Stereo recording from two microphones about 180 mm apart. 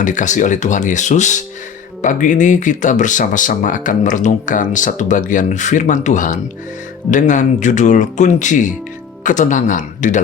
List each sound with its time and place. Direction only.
0.0 s speech: 45° left (ahead or behind)